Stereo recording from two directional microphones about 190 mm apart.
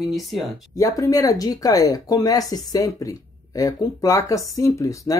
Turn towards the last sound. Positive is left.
turn(degrees=15)  # may be behind; listen again after turning